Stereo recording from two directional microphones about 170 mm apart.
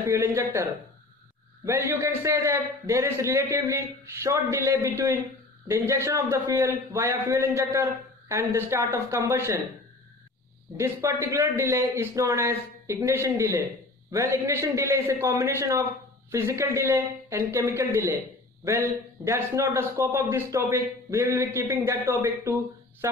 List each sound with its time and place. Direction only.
0.0 s a man's voice: 15° right (ahead or behind)
1.7 s a man's voice: 15° right (ahead or behind)
10.8 s a man's voice: 15° right (ahead or behind)